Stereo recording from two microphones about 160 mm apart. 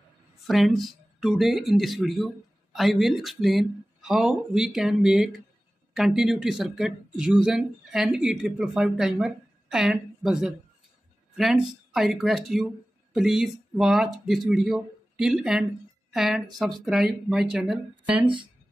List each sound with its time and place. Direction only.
0.4 s a woman's voice: centre (ahead or behind)
18.2 s speech: 30° right (ahead or behind)